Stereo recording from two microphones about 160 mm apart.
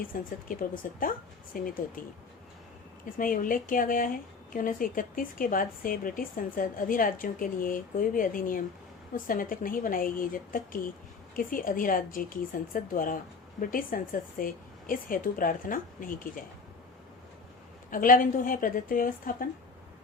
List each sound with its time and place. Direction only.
0.0 s speech: 60° left (ahead or behind)
3.2 s speech: 60° left (ahead or behind)
17.9 s speech: 60° left (ahead or behind)